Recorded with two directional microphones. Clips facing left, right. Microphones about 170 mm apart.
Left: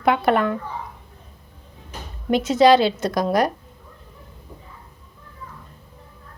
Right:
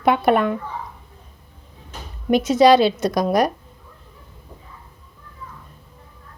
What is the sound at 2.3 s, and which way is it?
Speech, 20° right (ahead or behind).